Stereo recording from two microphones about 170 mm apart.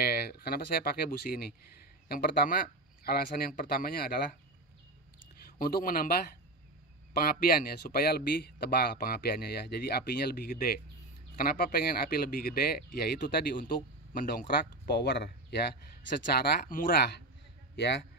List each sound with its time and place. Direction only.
0.0 s speech: 65° left (ahead or behind)
5.6 s speech: 55° left (ahead or behind)
17.7 s a man's voice: 85° left